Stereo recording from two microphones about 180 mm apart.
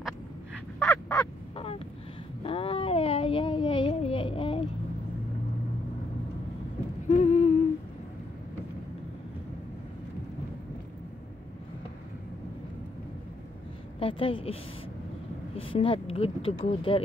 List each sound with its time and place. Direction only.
0.7 s crow: 15° left (ahead or behind)
1.2 s crow: 30° left (ahead or behind)
2.4 s a sound: 30° left (ahead or behind)
7.1 s humming: 40° left (ahead or behind)
13.9 s a woman's voice: 30° left (ahead or behind)